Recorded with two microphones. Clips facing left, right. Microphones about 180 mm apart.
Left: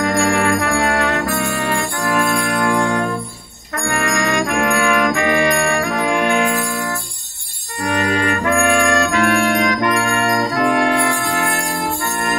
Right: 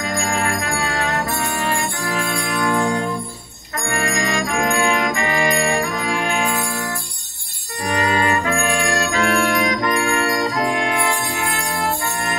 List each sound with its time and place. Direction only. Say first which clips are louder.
0.0 s music: left 6 dB; 60° left (ahead or behind)
7.8 s trumpet: left 1 dB; 65° left (ahead or behind)
10.0 s jingle bell: left 2 dB; 60° left (ahead or behind)